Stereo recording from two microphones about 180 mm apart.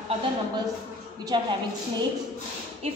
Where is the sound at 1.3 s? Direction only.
25° right (ahead or behind).